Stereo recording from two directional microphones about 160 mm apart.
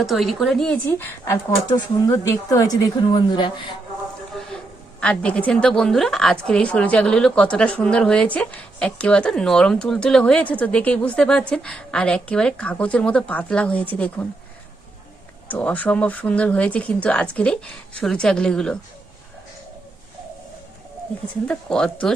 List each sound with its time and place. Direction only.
0.0 s speech: centre (ahead or behind); by 3.5 s 30° left (ahead or behind)
4.9 s a woman's voice: 5° left (ahead or behind)
15.4 s a woman's voice: 10° left (ahead or behind)
21.4 s speech: 5° left (ahead or behind)